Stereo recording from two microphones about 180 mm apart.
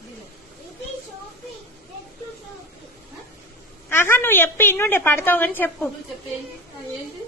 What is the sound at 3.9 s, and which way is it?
A woman's voice, 15° left (ahead or behind).